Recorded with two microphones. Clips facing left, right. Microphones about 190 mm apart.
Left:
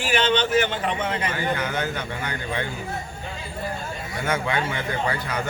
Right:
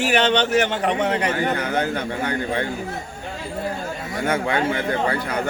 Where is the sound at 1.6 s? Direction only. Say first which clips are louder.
Right 4 dB; 55° right (ahead or behind).